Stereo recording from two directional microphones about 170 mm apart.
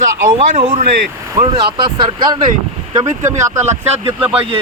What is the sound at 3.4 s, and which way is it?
Speech, 15° right (ahead or behind).